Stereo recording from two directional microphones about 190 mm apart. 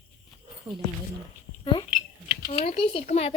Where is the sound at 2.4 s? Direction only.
40° left (ahead or behind).